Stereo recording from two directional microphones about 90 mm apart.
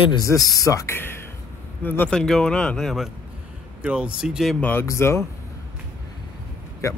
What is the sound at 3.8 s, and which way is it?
Speech, 10° right (ahead or behind).